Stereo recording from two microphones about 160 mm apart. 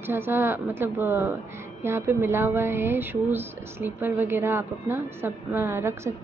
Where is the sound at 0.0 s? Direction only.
15° right (ahead or behind).